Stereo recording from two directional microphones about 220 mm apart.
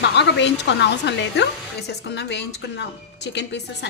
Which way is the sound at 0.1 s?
50° left (ahead or behind).